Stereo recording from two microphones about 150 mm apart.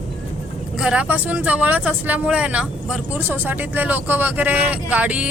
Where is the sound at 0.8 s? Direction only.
5° right (ahead or behind).